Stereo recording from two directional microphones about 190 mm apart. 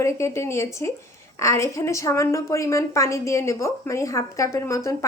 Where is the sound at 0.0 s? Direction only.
15° left (ahead or behind).